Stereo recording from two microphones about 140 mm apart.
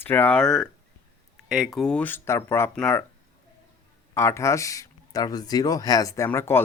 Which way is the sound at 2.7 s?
5° left (ahead or behind).